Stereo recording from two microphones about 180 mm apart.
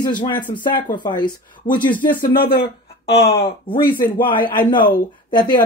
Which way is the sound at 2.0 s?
50° left (ahead or behind).